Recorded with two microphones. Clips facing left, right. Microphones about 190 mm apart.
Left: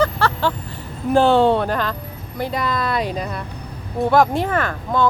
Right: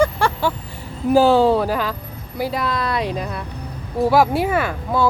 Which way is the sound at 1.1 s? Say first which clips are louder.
Right 1 dB; centre (ahead or behind).